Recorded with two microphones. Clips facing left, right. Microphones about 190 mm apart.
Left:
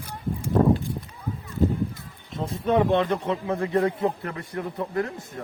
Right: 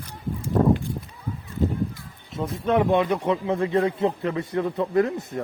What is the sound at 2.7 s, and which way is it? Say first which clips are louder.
Speech: right 1 dB; 15° right (ahead or behind).